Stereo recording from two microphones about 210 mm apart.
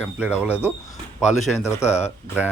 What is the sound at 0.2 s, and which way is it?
Speech, 5° right (ahead or behind).